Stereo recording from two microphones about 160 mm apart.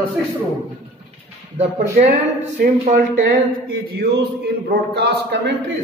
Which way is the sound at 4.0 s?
90° right.